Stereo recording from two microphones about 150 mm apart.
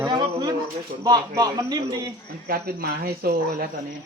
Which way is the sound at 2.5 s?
85° right.